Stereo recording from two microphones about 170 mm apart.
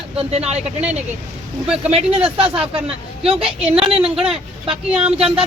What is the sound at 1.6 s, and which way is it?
Speech, 5° right (ahead or behind).